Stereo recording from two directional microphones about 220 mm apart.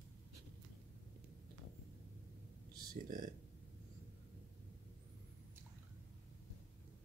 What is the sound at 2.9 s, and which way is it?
Speech, 40° right (ahead or behind).